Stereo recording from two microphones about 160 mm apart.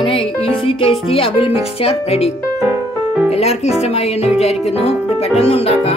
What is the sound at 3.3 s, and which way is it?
Speech, 40° left (ahead or behind).